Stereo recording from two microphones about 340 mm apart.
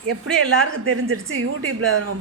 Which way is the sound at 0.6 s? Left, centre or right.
Right.